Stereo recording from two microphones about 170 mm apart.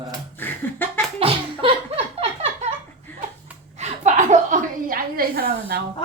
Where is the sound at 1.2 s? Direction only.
35° right (ahead or behind).